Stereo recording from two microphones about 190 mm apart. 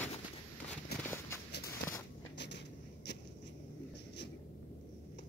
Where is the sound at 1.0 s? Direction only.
10° left (ahead or behind).